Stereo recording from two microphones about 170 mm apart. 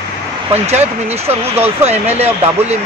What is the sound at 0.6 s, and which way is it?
Speech, 40° right (ahead or behind).